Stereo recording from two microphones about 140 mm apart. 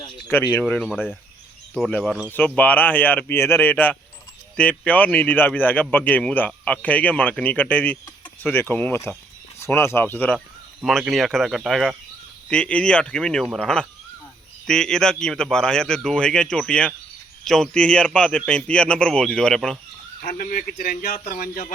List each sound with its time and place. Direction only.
0.3 s speech: 15° left (ahead or behind)
0.6 s a man's voice: 5° left (ahead or behind)
10.8 s a man's voice: 5° right (ahead or behind)
20.2 s a man's voice: 80° left